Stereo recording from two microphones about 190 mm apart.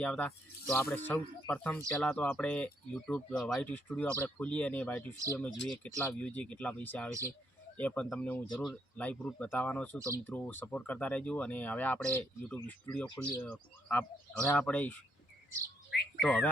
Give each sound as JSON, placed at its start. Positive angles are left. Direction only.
{"t": 0.0, "sound": "speech", "side_deg": 10}
{"t": 15.9, "sound": "bird", "side_deg": 60}
{"t": 16.2, "sound": "speech", "side_deg": 0}